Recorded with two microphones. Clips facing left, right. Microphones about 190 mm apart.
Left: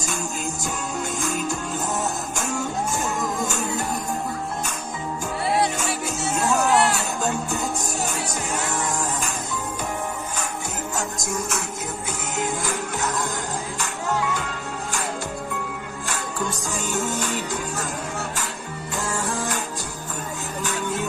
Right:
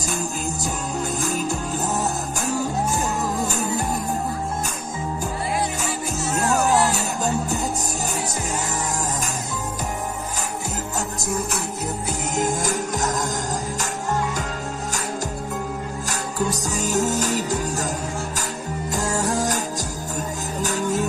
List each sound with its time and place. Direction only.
0.0 s music: 35° right (ahead or behind)
5.5 s music: 70° left (ahead or behind)
7.2 s music: 40° right (ahead or behind)
11.3 s music: 35° right (ahead or behind)
16.0 s music: 40° right (ahead or behind)
18.9 s music: 40° right (ahead or behind)